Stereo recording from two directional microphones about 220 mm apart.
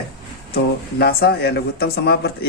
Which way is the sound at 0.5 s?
45° left (ahead or behind).